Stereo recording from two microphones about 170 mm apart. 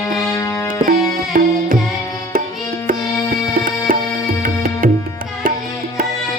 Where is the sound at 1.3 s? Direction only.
55° right (ahead or behind).